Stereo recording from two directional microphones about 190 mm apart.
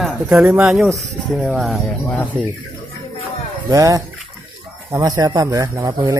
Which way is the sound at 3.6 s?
15° right (ahead or behind).